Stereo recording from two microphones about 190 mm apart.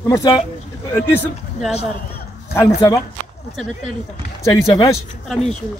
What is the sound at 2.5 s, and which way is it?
Speech, 15° left (ahead or behind).